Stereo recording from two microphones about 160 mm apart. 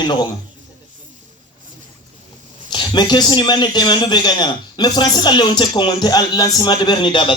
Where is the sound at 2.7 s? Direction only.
30° left (ahead or behind).